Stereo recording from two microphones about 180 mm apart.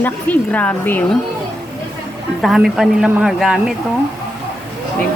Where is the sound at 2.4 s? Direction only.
Centre (ahead or behind).